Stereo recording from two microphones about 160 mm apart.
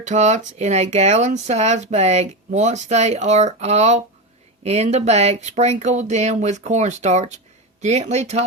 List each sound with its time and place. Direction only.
0.0 s speech: 45° right (ahead or behind)